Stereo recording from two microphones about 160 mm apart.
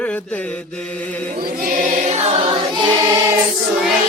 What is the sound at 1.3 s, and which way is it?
Choir, 60° right (ahead or behind).